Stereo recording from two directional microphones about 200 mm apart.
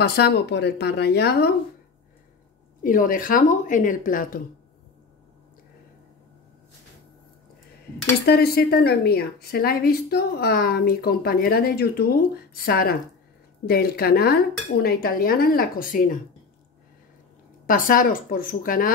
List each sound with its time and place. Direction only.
0.0 s a woman's voice: 55° left (ahead or behind)
2.8 s a woman's voice: 45° left (ahead or behind)
8.3 s a woman's voice: 55° left (ahead or behind)
17.6 s a woman's voice: 45° left (ahead or behind)